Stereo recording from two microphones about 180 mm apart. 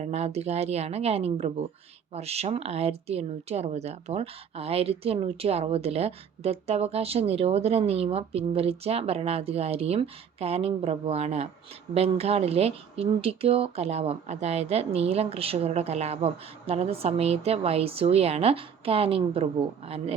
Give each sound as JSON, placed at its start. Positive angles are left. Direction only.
{"t": 0.0, "sound": "speech", "side_deg": -35}